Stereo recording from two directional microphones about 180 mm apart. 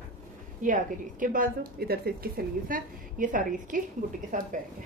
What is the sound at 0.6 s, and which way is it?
A woman's voice, 50° right (ahead or behind).